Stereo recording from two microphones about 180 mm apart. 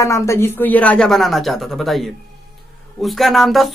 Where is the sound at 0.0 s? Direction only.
15° left (ahead or behind).